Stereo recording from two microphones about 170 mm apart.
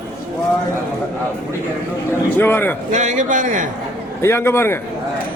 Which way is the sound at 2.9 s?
45° right (ahead or behind).